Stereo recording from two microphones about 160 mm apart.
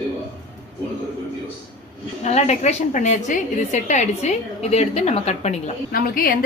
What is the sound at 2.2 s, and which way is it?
A woman's voice, 45° left (ahead or behind).